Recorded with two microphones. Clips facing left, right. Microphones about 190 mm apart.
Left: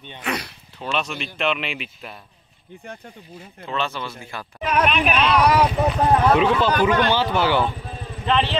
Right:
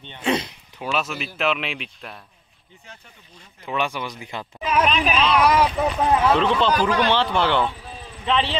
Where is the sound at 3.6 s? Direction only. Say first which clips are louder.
Right 1 dB; 15° right (ahead or behind).